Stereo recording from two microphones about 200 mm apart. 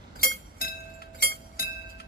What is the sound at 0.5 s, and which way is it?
Music, 50° left (ahead or behind).